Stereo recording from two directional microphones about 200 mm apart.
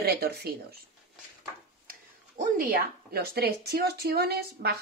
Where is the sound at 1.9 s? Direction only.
45° right (ahead or behind).